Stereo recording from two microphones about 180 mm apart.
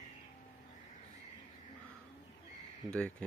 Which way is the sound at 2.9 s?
5° left (ahead or behind).